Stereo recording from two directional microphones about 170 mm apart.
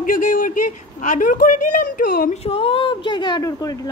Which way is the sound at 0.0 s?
55° left (ahead or behind).